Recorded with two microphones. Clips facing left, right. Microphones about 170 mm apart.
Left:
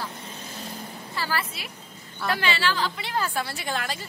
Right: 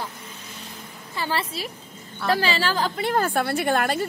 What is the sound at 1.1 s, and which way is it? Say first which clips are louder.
A woman's voice: right 3 dB; 25° right (ahead or behind).